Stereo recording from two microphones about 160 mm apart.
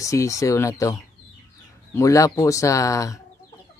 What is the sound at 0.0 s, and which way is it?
Speech, 20° left (ahead or behind).